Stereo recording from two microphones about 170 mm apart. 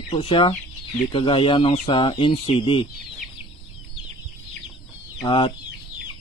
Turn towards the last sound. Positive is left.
turn(degrees=30)  # may be behind; listen again after turning